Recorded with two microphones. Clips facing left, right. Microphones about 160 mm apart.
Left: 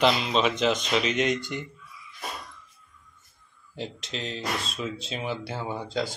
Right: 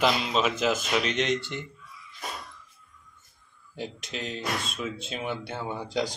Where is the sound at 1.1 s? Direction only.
10° left (ahead or behind).